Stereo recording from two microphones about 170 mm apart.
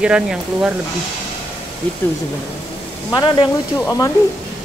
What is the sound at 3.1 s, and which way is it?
Speech, 25° left (ahead or behind).